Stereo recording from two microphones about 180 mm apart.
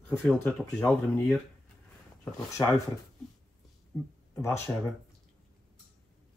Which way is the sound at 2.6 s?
20° left (ahead or behind).